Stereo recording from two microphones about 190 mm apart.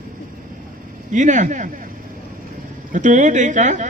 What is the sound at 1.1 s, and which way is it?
Speech, 40° right (ahead or behind).